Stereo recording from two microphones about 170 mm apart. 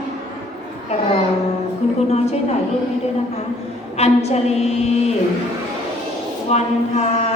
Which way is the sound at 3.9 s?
40° left (ahead or behind).